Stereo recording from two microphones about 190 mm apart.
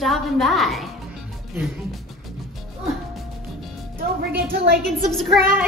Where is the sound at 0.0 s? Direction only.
Centre (ahead or behind).